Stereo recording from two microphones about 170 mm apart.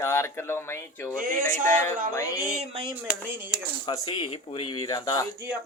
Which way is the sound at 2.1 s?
15° left (ahead or behind).